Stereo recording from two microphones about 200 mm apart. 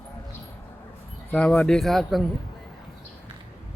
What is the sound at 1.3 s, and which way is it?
Speech, 5° left (ahead or behind).